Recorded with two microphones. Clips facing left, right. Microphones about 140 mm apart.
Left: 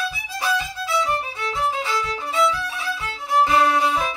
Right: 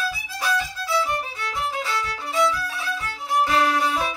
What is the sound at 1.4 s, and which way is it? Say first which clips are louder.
Music: left 4 dB; 25° left (ahead or behind).